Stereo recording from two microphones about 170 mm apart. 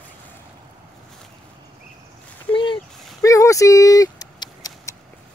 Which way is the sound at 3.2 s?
20° left (ahead or behind).